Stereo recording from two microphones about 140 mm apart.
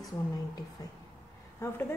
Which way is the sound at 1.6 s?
15° left (ahead or behind).